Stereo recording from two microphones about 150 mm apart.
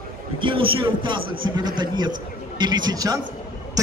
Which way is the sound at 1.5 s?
30° right (ahead or behind).